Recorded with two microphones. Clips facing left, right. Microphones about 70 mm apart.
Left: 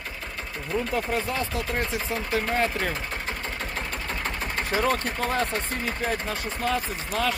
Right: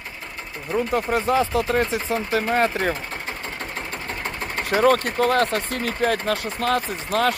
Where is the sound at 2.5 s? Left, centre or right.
Right.